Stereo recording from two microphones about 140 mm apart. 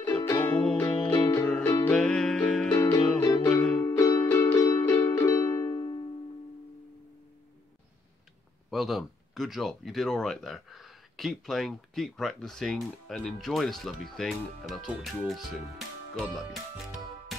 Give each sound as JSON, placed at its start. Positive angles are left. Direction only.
{"t": 0.1, "sound": "music", "side_deg": 15}
{"t": 1.2, "sound": "music", "side_deg": 25}
{"t": 1.9, "sound": "music", "side_deg": 5}
{"t": 2.7, "sound": "music", "side_deg": 25}
{"t": 8.6, "sound": "speech", "side_deg": 0}